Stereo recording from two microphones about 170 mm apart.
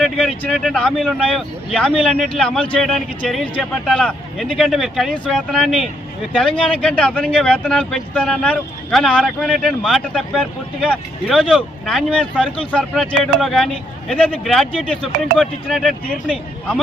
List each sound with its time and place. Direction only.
0.0 s speech: 5° left (ahead or behind)